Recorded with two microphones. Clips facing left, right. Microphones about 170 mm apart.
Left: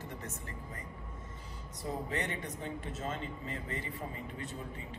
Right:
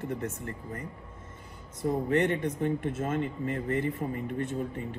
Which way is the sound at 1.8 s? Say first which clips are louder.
Right 11 dB; 60° right (ahead or behind).